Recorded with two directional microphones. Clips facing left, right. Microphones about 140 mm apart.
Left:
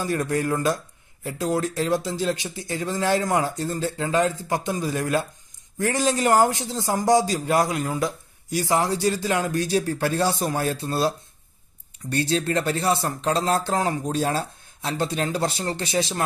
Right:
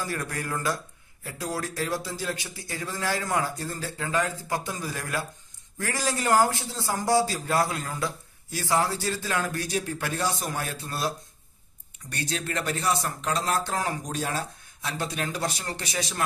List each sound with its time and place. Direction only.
0.0 s speech: 20° left (ahead or behind)
9.7 s speech: 35° left (ahead or behind)